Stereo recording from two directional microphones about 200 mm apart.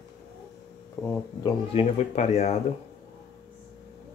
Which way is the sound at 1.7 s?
35° left (ahead or behind).